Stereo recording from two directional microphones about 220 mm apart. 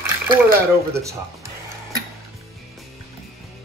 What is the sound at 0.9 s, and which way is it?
Speech, 15° right (ahead or behind).